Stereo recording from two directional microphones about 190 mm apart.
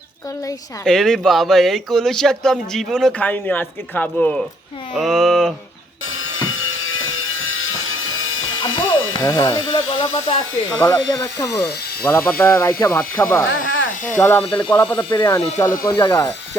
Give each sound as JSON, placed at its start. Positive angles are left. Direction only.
{"t": 0.9, "sound": "speech", "side_deg": 5}
{"t": 4.9, "sound": "a sound", "side_deg": 0}
{"t": 6.1, "sound": "a sound", "side_deg": 90}
{"t": 9.2, "sound": "speech", "side_deg": 20}
{"t": 10.7, "sound": "speech", "side_deg": 10}
{"t": 11.5, "sound": "speech", "side_deg": 5}
{"t": 13.5, "sound": "speech", "side_deg": 90}
{"t": 14.1, "sound": "speech", "side_deg": 10}